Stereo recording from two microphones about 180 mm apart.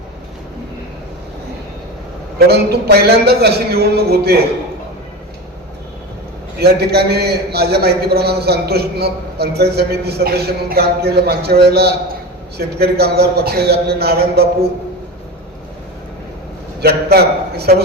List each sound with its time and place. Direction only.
2.5 s a man's voice: 60° right (ahead or behind)
6.6 s a man's voice: 65° right (ahead or behind)
16.8 s a man's voice: 60° right (ahead or behind)